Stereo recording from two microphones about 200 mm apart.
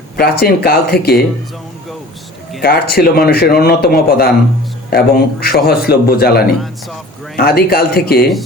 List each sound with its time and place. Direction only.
0.2 s a man's voice: 50° left (ahead or behind)
2.6 s a man's voice: 50° left (ahead or behind)